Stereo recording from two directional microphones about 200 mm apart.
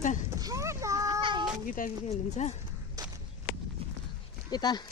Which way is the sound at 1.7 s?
40° left (ahead or behind).